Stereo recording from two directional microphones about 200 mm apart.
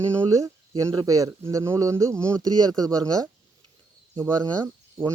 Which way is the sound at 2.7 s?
20° right (ahead or behind).